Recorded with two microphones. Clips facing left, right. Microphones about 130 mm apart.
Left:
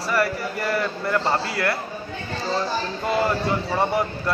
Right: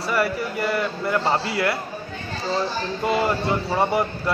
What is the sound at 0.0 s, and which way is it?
A man's voice, centre (ahead or behind).